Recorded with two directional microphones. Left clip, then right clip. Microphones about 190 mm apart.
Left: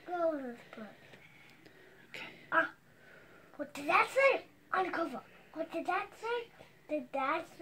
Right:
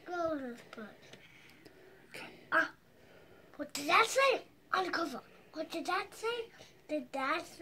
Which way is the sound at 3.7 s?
Centre (ahead or behind).